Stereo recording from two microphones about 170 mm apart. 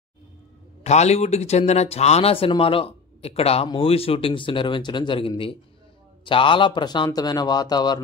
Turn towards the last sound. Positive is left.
turn(degrees=25)  # may be behind; listen again after turning